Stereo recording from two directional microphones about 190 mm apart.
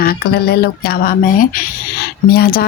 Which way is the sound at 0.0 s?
55° left (ahead or behind).